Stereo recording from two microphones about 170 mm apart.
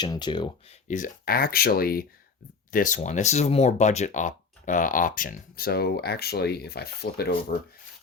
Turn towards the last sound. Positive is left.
turn(degrees=70)  # may be behind; listen again after turning